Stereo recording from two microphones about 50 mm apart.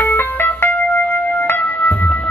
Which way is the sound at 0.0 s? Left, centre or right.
Left.